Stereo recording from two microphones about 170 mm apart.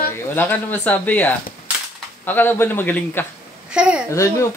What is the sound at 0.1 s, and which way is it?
Speech, 10° left (ahead or behind).